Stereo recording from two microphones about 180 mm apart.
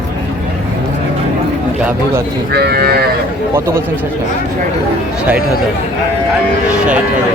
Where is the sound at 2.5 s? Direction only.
65° right (ahead or behind).